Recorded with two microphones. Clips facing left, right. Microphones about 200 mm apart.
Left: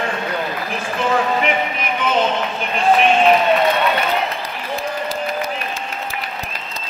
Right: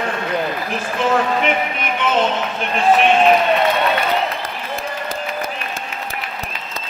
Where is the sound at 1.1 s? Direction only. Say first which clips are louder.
Even; centre (ahead or behind).